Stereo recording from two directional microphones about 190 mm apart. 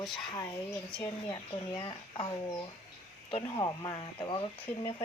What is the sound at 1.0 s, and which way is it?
Speech, 20° left (ahead or behind).